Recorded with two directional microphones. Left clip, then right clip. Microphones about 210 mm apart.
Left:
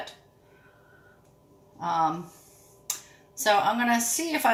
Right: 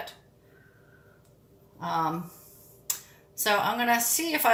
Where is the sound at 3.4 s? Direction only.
30° left (ahead or behind).